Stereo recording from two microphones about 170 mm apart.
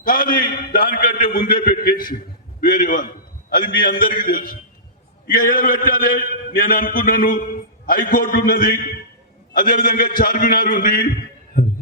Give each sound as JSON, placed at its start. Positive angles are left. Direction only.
{"t": 0.0, "sound": "a man's voice", "side_deg": 55}